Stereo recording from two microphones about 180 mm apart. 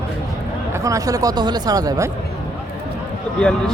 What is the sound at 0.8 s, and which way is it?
Speech, 20° right (ahead or behind).